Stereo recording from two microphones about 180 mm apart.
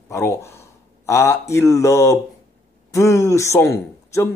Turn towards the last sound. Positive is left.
turn(degrees=15)  # may be behind; listen again after turning